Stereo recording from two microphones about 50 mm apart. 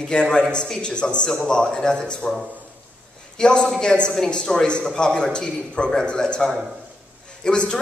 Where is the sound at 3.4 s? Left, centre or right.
Centre.